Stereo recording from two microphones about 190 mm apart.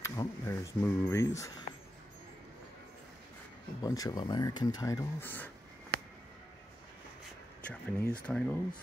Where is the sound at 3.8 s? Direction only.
20° left (ahead or behind).